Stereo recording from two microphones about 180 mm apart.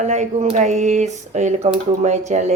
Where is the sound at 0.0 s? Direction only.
40° right (ahead or behind).